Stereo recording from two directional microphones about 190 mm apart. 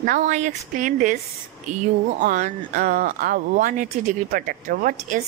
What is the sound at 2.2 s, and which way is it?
Speech, 45° right (ahead or behind).